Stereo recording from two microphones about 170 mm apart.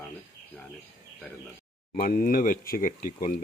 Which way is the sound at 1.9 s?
55° left (ahead or behind).